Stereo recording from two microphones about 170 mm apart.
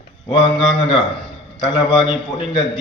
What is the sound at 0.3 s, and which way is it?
Speech, 30° left (ahead or behind).